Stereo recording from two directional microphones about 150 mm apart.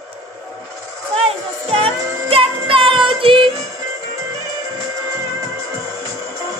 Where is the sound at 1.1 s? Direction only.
40° right (ahead or behind).